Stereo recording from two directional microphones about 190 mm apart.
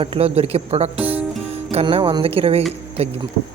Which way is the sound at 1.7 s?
30° right (ahead or behind).